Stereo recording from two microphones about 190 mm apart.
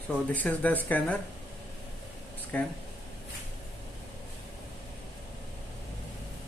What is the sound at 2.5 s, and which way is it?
Speech, 5° left (ahead or behind).